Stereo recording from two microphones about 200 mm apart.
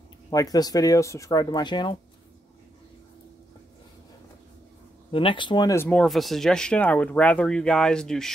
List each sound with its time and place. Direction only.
0.3 s speech: 20° left (ahead or behind)
5.1 s speech: 25° left (ahead or behind); by 8.3 s 5° left (ahead or behind)